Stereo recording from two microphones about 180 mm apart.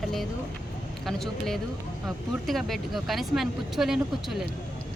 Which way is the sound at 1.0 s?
Centre (ahead or behind).